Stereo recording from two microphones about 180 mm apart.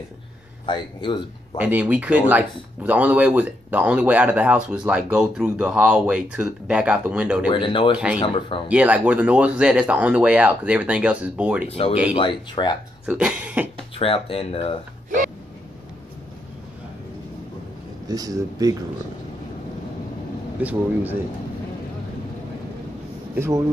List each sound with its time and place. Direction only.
0.7 s a man's voice: 25° left (ahead or behind)
1.6 s speech: 10° right (ahead or behind)
7.4 s a man's voice: 25° left (ahead or behind)
8.6 s speech: 5° right (ahead or behind)
12.2 s a man's voice: 25° left (ahead or behind)
13.0 s speech: 5° right (ahead or behind)
13.9 s speech: 30° left (ahead or behind)
18.0 s speech: 20° right (ahead or behind)
20.6 s speech: 10° right (ahead or behind)